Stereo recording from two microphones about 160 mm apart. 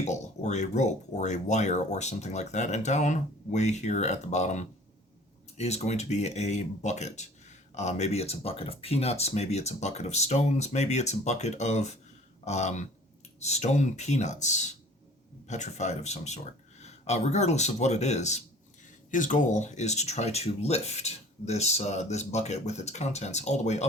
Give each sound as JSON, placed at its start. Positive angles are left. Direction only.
{"t": 0.0, "sound": "speech", "side_deg": 45}